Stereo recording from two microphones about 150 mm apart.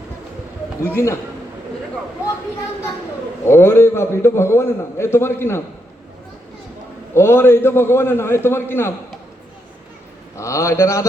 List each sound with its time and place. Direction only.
0.9 s a man's voice: 15° left (ahead or behind)
3.4 s a man's voice: 15° left (ahead or behind)
7.1 s a man's voice: 15° left (ahead or behind)
10.3 s a man's voice: 20° left (ahead or behind)